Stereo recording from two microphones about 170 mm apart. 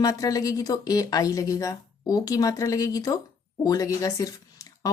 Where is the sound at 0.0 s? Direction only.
20° left (ahead or behind).